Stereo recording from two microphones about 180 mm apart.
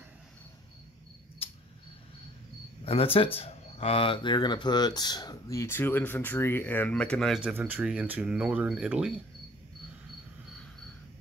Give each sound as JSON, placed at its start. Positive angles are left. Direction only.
{"t": 2.8, "sound": "speech", "side_deg": 30}